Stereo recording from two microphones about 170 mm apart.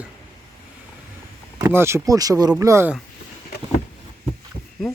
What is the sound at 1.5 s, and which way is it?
Speech, 15° right (ahead or behind).